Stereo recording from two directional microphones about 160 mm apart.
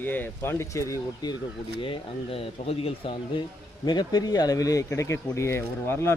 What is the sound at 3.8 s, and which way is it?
Speech, 25° left (ahead or behind).